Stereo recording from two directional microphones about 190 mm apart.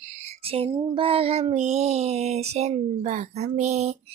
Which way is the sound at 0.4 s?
30° right (ahead or behind).